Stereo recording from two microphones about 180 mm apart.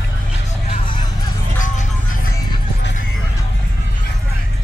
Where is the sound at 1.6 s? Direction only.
45° left (ahead or behind).